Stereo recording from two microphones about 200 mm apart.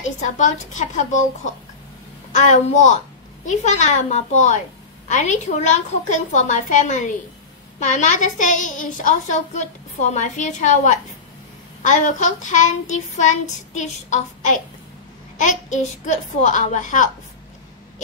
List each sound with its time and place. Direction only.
0.0 s a woman's voice: 35° left (ahead or behind)